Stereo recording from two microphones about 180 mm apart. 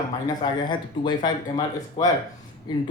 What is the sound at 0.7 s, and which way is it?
Speech, 25° left (ahead or behind).